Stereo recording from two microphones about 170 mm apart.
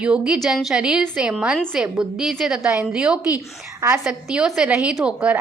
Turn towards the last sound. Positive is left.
turn(degrees=-5)  # may be behind; listen again after turning